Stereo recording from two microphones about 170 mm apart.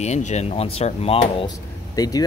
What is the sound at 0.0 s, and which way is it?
Speech, 40° left (ahead or behind).